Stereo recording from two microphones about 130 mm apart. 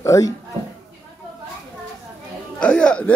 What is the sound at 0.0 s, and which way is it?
Speech, 25° left (ahead or behind).